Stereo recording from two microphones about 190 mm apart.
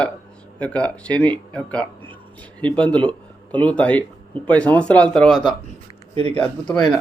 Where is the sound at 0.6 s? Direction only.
5° left (ahead or behind).